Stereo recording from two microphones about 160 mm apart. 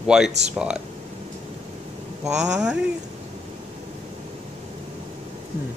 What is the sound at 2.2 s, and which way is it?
Speech, 5° right (ahead or behind).